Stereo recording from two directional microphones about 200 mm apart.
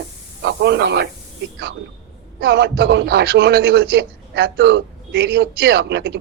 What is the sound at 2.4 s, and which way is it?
A man's voice, 55° right (ahead or behind).